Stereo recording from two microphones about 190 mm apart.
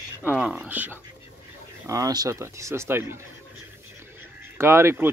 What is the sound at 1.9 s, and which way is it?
Speech, 20° right (ahead or behind).